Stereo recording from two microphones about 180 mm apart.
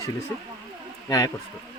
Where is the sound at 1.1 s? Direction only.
20° left (ahead or behind).